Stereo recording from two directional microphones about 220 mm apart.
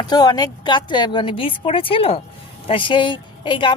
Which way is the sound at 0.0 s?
20° left (ahead or behind).